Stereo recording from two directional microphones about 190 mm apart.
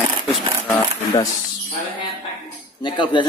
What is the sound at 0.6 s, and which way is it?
Speech, 20° left (ahead or behind).